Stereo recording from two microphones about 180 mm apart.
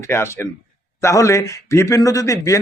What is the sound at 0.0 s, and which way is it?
A man's voice, 15° left (ahead or behind).